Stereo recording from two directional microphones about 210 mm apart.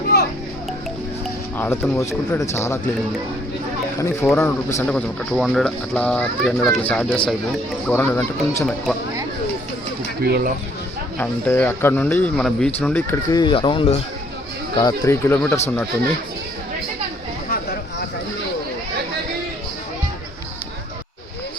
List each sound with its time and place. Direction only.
1.5 s a man's voice: 10° left (ahead or behind)
4.0 s a man's voice: 10° left (ahead or behind)
10.2 s speech: 50° right (ahead or behind)
11.2 s a man's voice: 10° left (ahead or behind)